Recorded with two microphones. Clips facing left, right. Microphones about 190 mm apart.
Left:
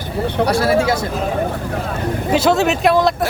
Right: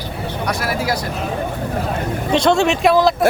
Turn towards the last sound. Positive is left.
turn(degrees=0)  # may be behind; listen again after turning